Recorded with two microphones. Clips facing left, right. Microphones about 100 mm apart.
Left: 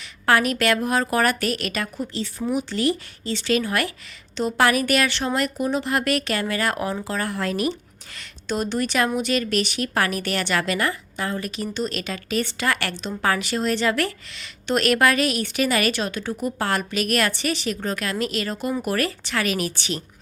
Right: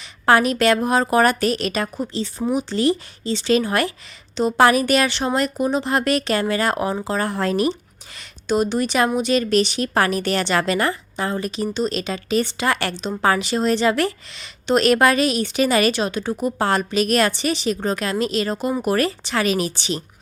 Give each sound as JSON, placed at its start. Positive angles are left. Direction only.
{"t": 0.3, "sound": "a woman's voice", "side_deg": -25}
{"t": 8.1, "sound": "a woman's voice", "side_deg": -15}